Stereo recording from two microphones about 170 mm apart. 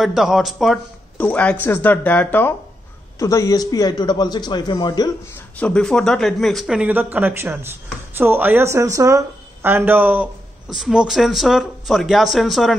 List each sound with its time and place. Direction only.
0.0 s a man's voice: centre (ahead or behind); by 5.1 s 25° left (ahead or behind)
5.6 s speech: 5° left (ahead or behind)